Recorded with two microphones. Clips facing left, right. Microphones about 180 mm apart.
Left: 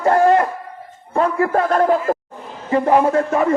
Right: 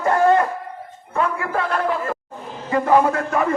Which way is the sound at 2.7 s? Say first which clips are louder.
Left 2 dB; 30° left (ahead or behind).